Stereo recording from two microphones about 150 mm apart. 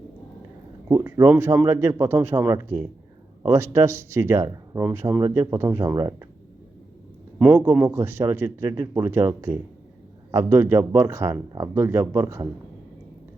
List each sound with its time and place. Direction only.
0.9 s speech: 20° right (ahead or behind)
4.8 s speech: 10° right (ahead or behind)
7.3 s speech: 10° right (ahead or behind)